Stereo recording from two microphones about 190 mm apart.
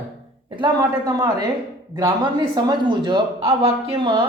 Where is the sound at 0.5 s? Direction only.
20° right (ahead or behind).